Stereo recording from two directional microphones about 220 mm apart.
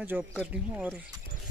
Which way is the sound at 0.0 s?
10° right (ahead or behind).